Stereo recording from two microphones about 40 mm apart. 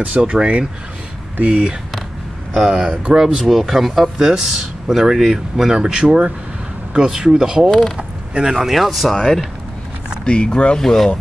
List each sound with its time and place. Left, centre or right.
0.0 s speech: right
2.5 s speech: centre
10.2 s speech: left
10.8 s speech: centre